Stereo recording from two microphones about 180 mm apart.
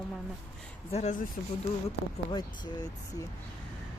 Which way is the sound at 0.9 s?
40° left (ahead or behind).